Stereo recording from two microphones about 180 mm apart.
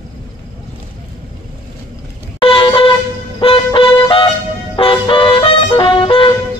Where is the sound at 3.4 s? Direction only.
30° left (ahead or behind).